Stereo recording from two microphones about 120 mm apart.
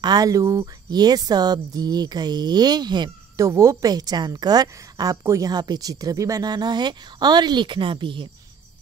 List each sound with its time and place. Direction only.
0.0 s a woman's voice: 35° right (ahead or behind)
3.3 s a woman's voice: 25° right (ahead or behind); by 8.3 s 45° right (ahead or behind)